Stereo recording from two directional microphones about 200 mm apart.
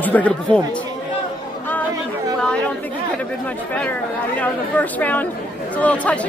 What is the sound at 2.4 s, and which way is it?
Chatter, 5° left (ahead or behind).